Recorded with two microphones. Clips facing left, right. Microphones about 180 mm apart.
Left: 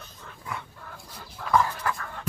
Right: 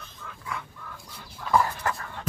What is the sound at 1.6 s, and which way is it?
Dog, 40° right (ahead or behind).